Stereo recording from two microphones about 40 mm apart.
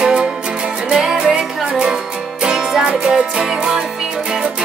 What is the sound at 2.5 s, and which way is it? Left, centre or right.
Music, centre.